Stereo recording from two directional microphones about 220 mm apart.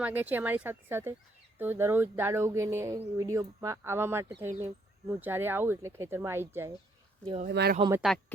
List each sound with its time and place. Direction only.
0.0 s speech: 10° right (ahead or behind)
7.4 s speech: 45° right (ahead or behind)
7.8 s speech: 15° right (ahead or behind)